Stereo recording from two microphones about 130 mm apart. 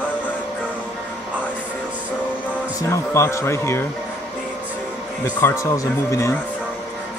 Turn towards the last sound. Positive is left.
turn(degrees=25)  # may be behind; listen again after turning